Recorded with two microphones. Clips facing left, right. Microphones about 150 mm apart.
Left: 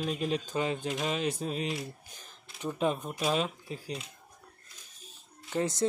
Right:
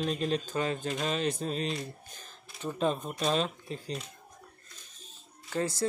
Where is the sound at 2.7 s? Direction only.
10° left (ahead or behind).